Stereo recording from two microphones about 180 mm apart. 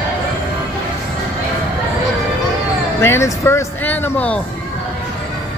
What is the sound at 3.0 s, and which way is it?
Speech, 15° left (ahead or behind).